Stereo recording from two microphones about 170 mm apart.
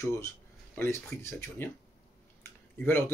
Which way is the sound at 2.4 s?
15° left (ahead or behind).